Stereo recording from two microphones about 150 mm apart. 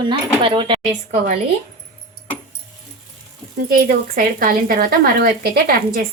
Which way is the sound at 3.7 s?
70° right (ahead or behind).